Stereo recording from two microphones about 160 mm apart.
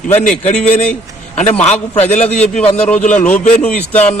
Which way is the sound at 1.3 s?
40° left (ahead or behind).